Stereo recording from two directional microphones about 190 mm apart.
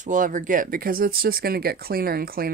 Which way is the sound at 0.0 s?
45° right (ahead or behind).